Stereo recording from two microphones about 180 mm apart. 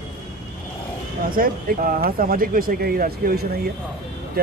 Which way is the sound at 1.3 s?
50° right (ahead or behind).